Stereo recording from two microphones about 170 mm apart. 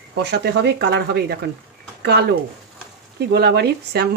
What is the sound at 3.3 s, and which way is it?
Speech, 75° right (ahead or behind).